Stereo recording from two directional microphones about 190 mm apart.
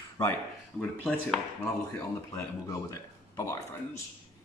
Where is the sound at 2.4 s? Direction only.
15° left (ahead or behind).